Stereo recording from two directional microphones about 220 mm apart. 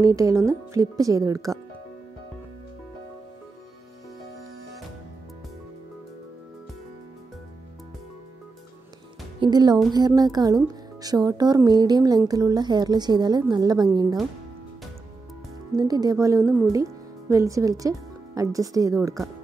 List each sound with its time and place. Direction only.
0.0 s speech: 15° right (ahead or behind)
9.4 s a woman's voice: 20° right (ahead or behind)
15.7 s speech: 15° right (ahead or behind)